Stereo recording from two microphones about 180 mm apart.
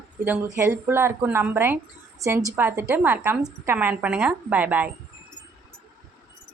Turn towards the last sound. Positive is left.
turn(degrees=-10)  # may be behind; listen again after turning